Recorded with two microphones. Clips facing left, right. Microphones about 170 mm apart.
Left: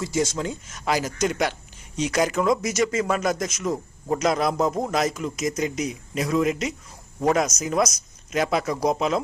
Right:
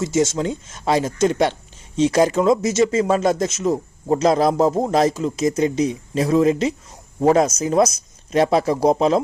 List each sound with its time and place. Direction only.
0.0 s speech: 25° right (ahead or behind)